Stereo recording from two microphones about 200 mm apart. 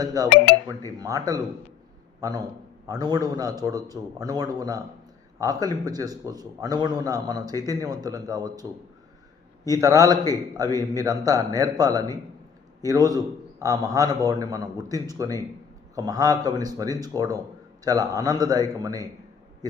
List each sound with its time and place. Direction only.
0.0 s a man's voice: 20° right (ahead or behind)
9.6 s a man's voice: 15° right (ahead or behind)